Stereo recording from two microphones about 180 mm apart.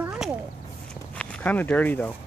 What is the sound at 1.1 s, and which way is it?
Speech, 10° left (ahead or behind).